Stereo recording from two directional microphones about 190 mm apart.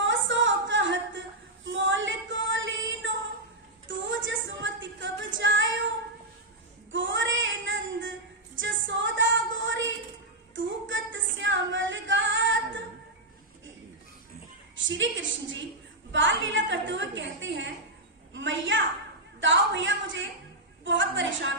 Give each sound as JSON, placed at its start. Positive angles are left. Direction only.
{"t": 0.0, "sound": "music", "side_deg": -75}
{"t": 1.6, "sound": "female singing", "side_deg": -75}
{"t": 3.8, "sound": "music", "side_deg": -80}
{"t": 6.9, "sound": "child singing", "side_deg": -75}
{"t": 8.5, "sound": "female singing", "side_deg": -75}
{"t": 14.8, "sound": "a sound", "side_deg": -80}